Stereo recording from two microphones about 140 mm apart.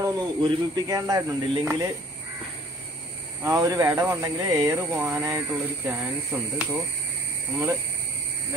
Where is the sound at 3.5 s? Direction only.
25° right (ahead or behind).